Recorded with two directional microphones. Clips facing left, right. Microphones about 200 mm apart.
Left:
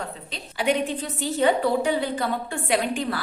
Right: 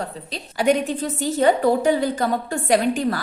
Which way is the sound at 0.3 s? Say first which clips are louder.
Right 5 dB; 45° right (ahead or behind).